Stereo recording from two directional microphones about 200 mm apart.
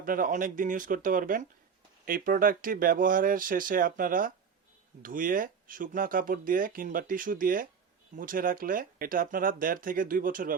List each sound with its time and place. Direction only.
0.0 s speech: 45° right (ahead or behind)